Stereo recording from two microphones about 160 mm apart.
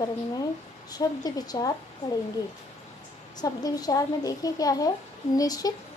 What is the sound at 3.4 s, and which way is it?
A woman's voice, 25° left (ahead or behind).